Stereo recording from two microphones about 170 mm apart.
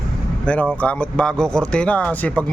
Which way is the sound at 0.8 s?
10° left (ahead or behind).